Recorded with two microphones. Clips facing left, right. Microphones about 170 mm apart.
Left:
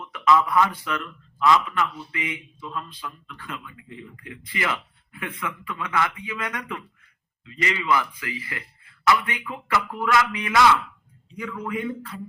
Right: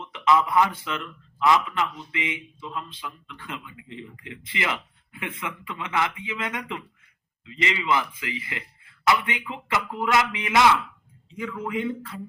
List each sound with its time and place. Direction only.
0.0 s a man's voice: 20° right (ahead or behind)